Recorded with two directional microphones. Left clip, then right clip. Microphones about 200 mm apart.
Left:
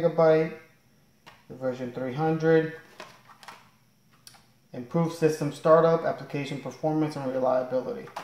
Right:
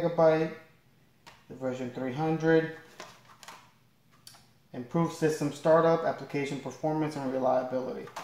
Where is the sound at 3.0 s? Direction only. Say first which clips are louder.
Left 2 dB; 5° left (ahead or behind).